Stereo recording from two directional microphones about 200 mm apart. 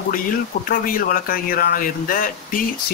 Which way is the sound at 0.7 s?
45° left (ahead or behind).